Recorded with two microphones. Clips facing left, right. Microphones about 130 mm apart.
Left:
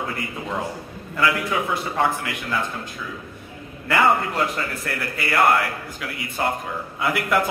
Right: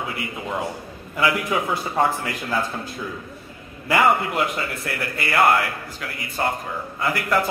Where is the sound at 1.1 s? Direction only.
20° right (ahead or behind).